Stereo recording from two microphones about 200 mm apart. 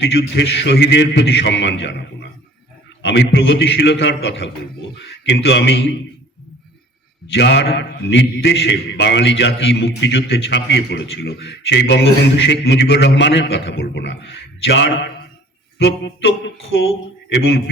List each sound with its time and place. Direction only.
0.0 s a man's voice: 60° left (ahead or behind)
3.0 s a man's voice: 65° left (ahead or behind)
7.3 s a man's voice: 60° left (ahead or behind)
17.2 s mantra: 60° left (ahead or behind)